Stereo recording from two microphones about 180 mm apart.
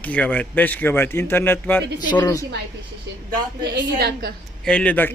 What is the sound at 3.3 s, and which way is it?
A woman's voice, 65° right (ahead or behind).